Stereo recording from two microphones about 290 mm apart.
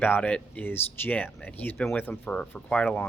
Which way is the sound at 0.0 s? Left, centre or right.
Centre.